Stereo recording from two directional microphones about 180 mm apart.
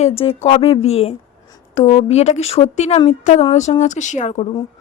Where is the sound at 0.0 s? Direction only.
30° left (ahead or behind).